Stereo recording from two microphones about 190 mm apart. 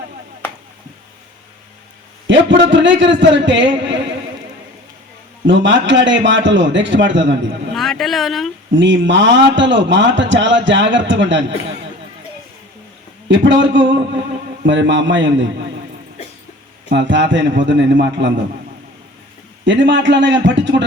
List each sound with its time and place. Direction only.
2.2 s a man's voice: 70° right (ahead or behind)
5.5 s a man's voice: 70° right (ahead or behind)
7.8 s speech: centre (ahead or behind)
8.7 s a man's voice: 75° right (ahead or behind)
13.2 s a man's voice: 75° right (ahead or behind)
16.9 s a man's voice: 70° right (ahead or behind)
19.6 s a man's voice: 70° right (ahead or behind)